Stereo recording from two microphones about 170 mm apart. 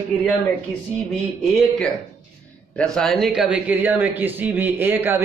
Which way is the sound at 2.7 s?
5° left (ahead or behind).